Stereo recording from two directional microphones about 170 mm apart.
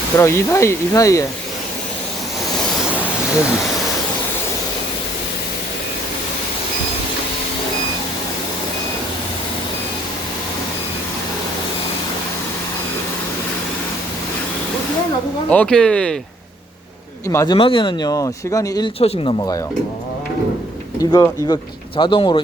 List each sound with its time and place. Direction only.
0.2 s speech: 15° left (ahead or behind)
15.4 s speech: 5° left (ahead or behind)
17.2 s speech: 20° left (ahead or behind)
18.9 s speech: 35° left (ahead or behind)
21.0 s speech: 25° left (ahead or behind)